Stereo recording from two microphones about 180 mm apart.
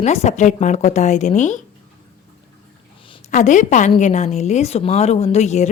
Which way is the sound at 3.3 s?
45° left (ahead or behind).